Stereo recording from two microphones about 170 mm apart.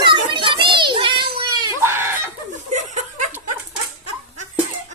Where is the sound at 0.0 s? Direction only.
30° right (ahead or behind).